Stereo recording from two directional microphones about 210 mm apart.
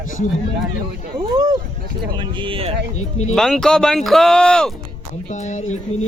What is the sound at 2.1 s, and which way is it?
Speech, 25° right (ahead or behind).